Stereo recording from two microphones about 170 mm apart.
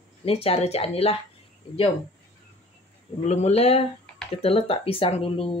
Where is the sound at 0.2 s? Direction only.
35° left (ahead or behind).